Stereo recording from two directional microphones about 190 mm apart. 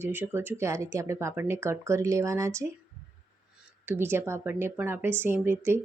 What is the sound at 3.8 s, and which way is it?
Speech, 10° right (ahead or behind).